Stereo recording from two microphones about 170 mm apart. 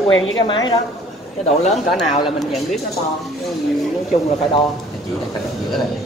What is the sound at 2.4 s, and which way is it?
Speech, centre (ahead or behind).